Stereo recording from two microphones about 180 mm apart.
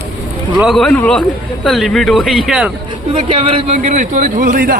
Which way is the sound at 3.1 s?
30° right (ahead or behind).